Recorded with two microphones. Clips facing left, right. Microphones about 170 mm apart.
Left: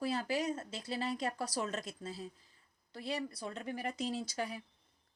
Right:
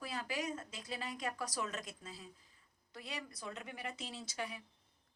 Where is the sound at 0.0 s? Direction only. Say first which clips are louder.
Left 6 dB; 30° left (ahead or behind).